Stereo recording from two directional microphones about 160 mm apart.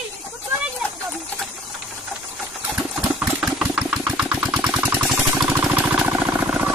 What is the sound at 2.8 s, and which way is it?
Engine, 10° right (ahead or behind).